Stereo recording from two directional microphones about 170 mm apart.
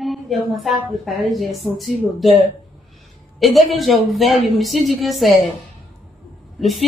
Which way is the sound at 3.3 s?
Centre (ahead or behind).